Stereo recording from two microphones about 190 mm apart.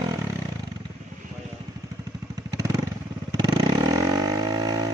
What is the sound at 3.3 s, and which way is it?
Vehicle, 20° right (ahead or behind).